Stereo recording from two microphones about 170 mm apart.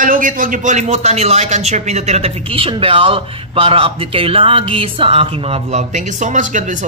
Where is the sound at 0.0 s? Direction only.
50° right (ahead or behind).